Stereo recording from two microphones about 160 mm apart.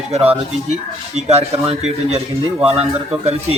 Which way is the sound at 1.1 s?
40° right (ahead or behind).